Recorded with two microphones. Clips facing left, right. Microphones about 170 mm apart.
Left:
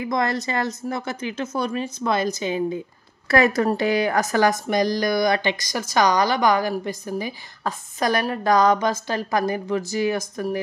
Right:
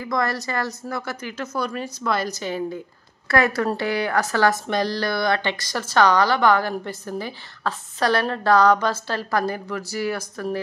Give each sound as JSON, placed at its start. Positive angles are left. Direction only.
{"t": 0.0, "sound": "a woman's voice", "side_deg": 20}